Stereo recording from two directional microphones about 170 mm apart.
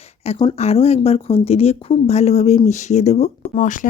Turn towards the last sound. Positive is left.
turn(degrees=50)  # may be behind; listen again after turning